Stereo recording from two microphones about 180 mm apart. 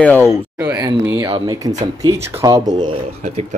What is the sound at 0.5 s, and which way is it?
Speech, 10° right (ahead or behind).